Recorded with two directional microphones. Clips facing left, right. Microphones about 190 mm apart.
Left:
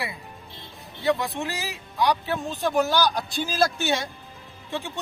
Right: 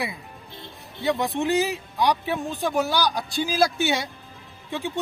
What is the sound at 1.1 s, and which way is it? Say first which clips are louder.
Speech: right 2 dB; 20° right (ahead or behind).